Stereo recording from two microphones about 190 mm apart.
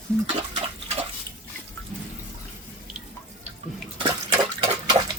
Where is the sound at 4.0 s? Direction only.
35° right (ahead or behind).